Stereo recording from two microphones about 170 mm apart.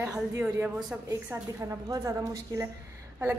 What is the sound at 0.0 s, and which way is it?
A woman's voice, 20° right (ahead or behind).